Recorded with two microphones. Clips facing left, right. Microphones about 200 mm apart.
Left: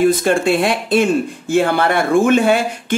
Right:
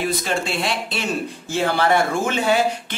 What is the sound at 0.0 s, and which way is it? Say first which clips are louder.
Speech: left 9 dB; 50° left (ahead or behind).